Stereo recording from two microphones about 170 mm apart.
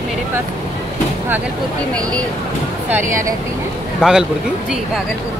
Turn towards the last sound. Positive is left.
turn(degrees=-5)  # may be behind; listen again after turning